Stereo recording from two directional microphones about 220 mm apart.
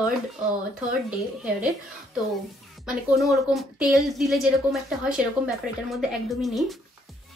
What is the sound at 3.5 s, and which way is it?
A woman's voice, centre (ahead or behind).